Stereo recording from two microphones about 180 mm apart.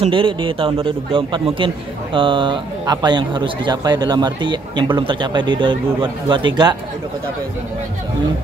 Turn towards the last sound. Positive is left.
turn(degrees=-25)  # may be behind; listen again after turning